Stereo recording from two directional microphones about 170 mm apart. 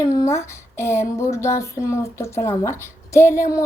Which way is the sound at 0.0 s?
20° left (ahead or behind).